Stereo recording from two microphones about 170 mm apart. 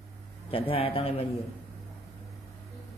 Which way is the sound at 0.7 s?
35° left (ahead or behind).